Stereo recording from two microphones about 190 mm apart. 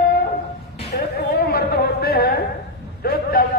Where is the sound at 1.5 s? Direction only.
55° left (ahead or behind).